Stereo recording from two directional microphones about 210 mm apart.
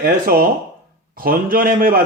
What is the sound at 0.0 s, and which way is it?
Speech, 45° right (ahead or behind).